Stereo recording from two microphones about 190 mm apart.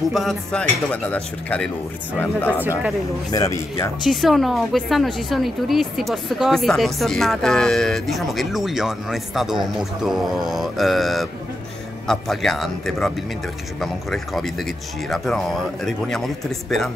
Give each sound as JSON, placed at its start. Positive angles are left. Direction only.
{"t": 0.1, "sound": "a woman's voice", "side_deg": 0}
{"t": 4.0, "sound": "a woman's voice", "side_deg": 0}